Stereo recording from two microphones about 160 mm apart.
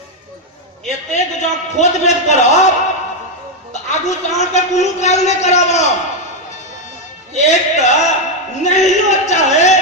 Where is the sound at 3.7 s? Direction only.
45° left (ahead or behind).